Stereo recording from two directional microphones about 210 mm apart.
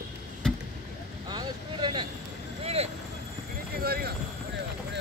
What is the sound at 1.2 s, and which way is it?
Vehicle, 20° right (ahead or behind).